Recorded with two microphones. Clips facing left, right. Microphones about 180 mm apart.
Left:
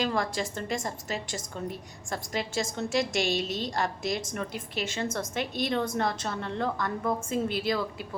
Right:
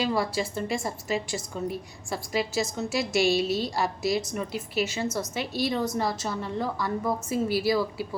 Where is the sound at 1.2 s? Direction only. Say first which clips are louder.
Right 4 dB; 45° left (ahead or behind).